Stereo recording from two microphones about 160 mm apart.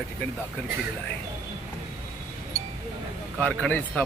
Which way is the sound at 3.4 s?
10° left (ahead or behind).